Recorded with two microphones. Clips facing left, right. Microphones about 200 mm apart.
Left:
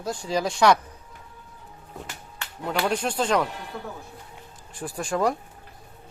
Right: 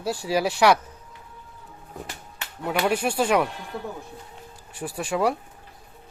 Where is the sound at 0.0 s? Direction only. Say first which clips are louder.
Right 2 dB; 10° right (ahead or behind).